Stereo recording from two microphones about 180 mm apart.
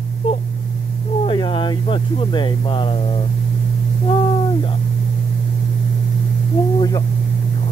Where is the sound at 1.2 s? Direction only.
30° left (ahead or behind).